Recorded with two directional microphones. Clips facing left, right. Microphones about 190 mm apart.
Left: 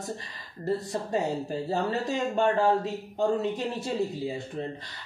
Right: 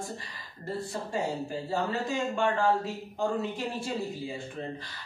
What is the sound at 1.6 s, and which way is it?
Speech, 40° left (ahead or behind).